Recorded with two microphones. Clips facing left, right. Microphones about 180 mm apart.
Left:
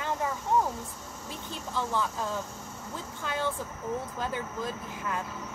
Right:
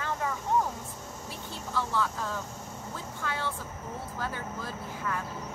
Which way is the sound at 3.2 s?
20° left (ahead or behind).